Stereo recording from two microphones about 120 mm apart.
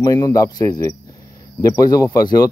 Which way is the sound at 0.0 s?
30° left (ahead or behind).